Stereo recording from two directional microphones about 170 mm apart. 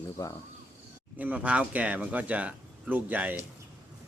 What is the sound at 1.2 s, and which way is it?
Speech, 10° right (ahead or behind).